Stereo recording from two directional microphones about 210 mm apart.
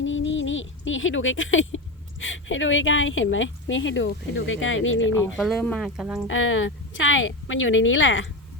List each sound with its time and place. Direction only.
0.0 s speech: 65° left (ahead or behind)
5.4 s speech: centre (ahead or behind)
6.2 s speech: 65° left (ahead or behind)